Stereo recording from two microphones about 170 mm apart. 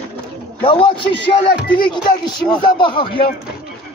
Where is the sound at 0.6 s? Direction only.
30° left (ahead or behind).